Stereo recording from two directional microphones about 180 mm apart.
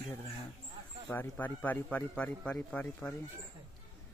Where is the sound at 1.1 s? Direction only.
10° left (ahead or behind).